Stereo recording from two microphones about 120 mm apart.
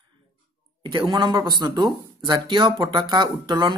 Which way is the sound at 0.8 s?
40° right (ahead or behind).